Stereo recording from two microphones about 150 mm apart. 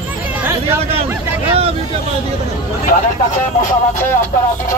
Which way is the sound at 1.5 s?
40° right (ahead or behind).